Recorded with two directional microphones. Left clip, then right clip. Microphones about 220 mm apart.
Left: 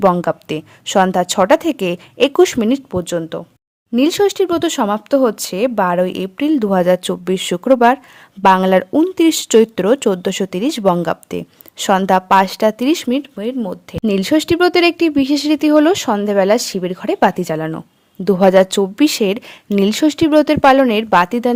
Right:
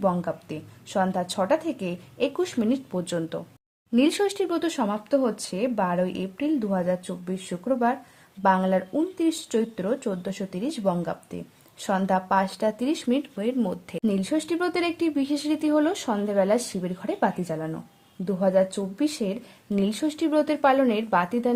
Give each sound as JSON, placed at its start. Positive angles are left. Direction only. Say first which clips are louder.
{"t": 0.0, "sound": "speech", "louder": "left 12 dB", "side_deg": 45}